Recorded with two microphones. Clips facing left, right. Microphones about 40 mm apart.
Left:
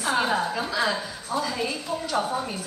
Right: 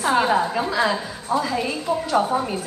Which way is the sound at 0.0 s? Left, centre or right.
Centre.